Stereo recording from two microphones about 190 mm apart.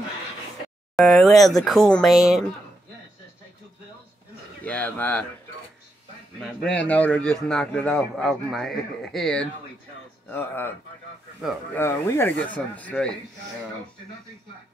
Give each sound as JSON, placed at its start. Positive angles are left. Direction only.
{"t": 0.9, "sound": "speech", "side_deg": 0}
{"t": 4.6, "sound": "speech", "side_deg": 10}
{"t": 6.4, "sound": "a man's voice", "side_deg": 5}
{"t": 11.7, "sound": "speech", "side_deg": 10}